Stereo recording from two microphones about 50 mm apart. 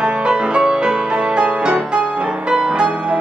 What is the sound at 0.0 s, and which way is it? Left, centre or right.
Music, centre.